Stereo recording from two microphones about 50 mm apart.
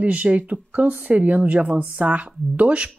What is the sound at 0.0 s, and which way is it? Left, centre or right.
Speech, right.